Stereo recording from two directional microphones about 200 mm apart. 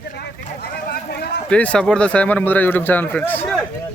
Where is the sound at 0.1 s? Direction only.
50° left (ahead or behind).